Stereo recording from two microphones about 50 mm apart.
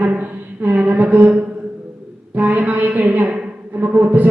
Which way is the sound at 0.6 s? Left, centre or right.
Right.